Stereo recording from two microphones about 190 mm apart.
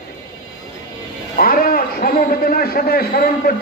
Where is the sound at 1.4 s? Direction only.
50° left (ahead or behind).